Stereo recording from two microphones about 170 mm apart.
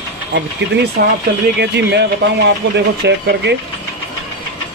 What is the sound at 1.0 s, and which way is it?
Speech, 65° right (ahead or behind).